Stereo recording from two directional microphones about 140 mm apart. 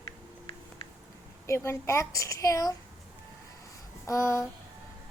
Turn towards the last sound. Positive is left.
turn(degrees=20)  # may be behind; listen again after turning